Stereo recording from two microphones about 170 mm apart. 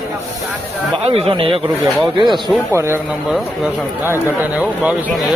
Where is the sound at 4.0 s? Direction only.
10° right (ahead or behind).